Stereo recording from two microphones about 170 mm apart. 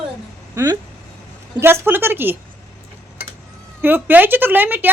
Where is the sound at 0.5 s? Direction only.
20° right (ahead or behind).